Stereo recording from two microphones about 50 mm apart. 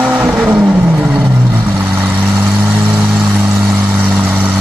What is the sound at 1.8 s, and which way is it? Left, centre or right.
Vehicle, right.